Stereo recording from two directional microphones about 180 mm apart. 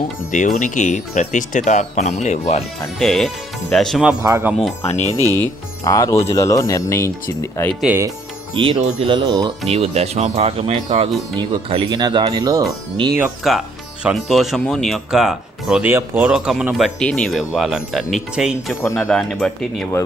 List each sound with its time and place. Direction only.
0.3 s speech: 45° left (ahead or behind)
3.0 s speech: centre (ahead or behind)
4.2 s speech: 15° right (ahead or behind)
5.8 s speech: 20° left (ahead or behind)
7.8 s speech: 10° right (ahead or behind)
8.5 s speech: 30° right (ahead or behind)
13.1 s speech: 10° right (ahead or behind)